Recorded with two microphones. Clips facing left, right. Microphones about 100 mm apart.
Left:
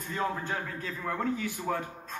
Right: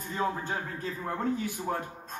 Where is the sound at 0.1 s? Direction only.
30° right (ahead or behind).